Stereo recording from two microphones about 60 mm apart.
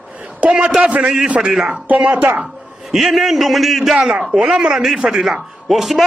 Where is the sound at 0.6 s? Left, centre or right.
Centre.